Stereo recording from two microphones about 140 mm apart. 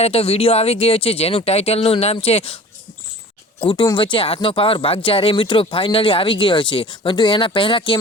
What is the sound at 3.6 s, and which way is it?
Speech, 35° left (ahead or behind).